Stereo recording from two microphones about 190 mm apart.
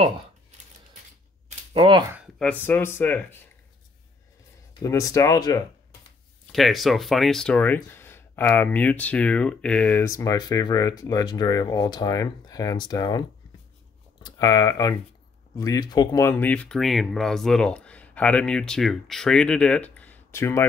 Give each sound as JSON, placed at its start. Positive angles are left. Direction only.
{"t": 1.7, "sound": "speech", "side_deg": -25}
{"t": 2.3, "sound": "speech", "side_deg": 5}
{"t": 4.8, "sound": "speech", "side_deg": 15}
{"t": 6.5, "sound": "speech", "side_deg": 0}
{"t": 14.2, "sound": "speech", "side_deg": 20}